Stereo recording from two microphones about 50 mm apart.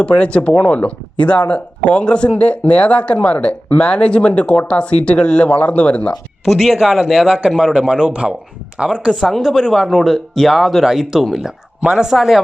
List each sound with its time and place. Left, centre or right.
0.0 s speech: left
6.4 s speech: centre
7.9 s speech: centre
9.1 s speech: centre
11.3 s speech: centre